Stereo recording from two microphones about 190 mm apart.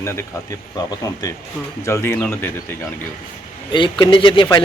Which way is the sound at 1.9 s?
15° left (ahead or behind).